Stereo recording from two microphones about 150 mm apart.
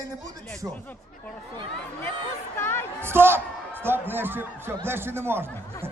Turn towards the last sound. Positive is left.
turn(degrees=-15)  # may be behind; listen again after turning